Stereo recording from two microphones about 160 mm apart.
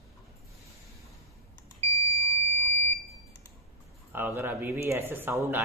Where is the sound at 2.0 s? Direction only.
15° left (ahead or behind).